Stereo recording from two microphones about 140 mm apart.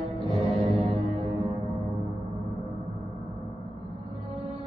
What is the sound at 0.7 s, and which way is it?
Music, 45° right (ahead or behind).